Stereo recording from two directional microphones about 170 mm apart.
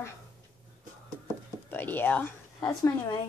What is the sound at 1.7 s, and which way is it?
Speech, 10° left (ahead or behind).